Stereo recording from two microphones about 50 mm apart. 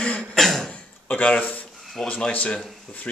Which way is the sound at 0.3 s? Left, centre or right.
Centre.